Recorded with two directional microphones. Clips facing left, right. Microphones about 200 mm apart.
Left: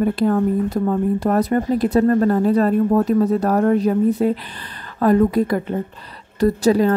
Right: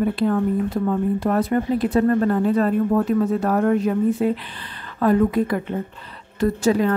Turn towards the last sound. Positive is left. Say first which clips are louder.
# left 3 dB
turn(degrees=35)  # may be behind; listen again after turning